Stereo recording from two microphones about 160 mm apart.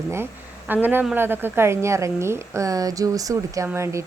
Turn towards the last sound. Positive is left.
turn(degrees=-15)  # may be behind; listen again after turning